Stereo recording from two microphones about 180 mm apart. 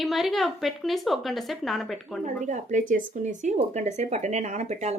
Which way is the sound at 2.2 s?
40° right (ahead or behind).